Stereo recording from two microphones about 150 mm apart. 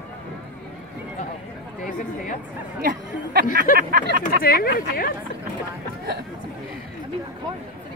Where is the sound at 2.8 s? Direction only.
90° right.